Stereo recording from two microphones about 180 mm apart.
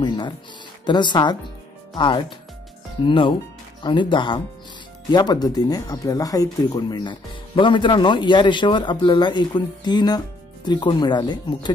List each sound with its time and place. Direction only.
0.0 s speech: 25° left (ahead or behind)